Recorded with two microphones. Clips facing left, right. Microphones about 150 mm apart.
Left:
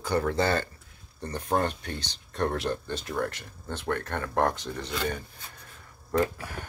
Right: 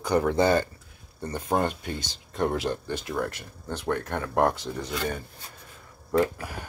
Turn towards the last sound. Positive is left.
turn(degrees=-15)  # may be behind; listen again after turning